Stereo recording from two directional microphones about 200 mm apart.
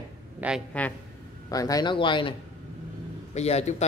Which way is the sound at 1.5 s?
20° left (ahead or behind).